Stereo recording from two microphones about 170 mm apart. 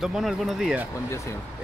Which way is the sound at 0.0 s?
Centre (ahead or behind).